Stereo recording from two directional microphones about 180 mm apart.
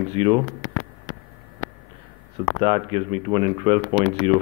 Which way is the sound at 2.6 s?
30° right (ahead or behind).